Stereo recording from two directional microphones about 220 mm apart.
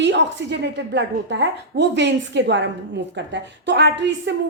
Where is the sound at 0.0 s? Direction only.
55° right (ahead or behind).